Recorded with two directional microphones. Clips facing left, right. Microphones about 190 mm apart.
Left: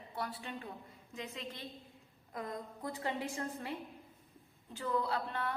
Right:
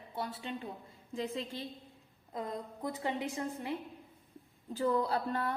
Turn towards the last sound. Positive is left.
turn(degrees=-40)  # may be behind; listen again after turning